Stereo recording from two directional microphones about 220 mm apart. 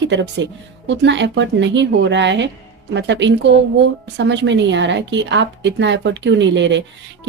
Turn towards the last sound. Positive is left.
turn(degrees=-55)  # may be behind; listen again after turning